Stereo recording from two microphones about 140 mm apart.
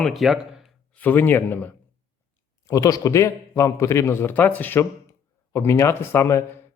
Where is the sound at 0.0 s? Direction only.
Centre (ahead or behind).